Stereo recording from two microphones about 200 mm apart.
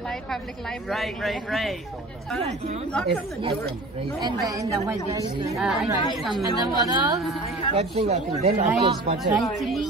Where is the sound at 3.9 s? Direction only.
20° right (ahead or behind).